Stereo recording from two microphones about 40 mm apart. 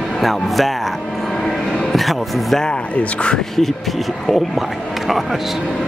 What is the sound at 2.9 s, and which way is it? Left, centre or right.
Speech, left.